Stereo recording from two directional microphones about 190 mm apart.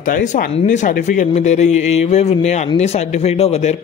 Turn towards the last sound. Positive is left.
turn(degrees=35)  # may be behind; listen again after turning